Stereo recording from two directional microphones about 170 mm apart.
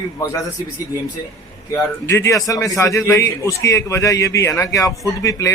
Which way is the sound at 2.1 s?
15° left (ahead or behind).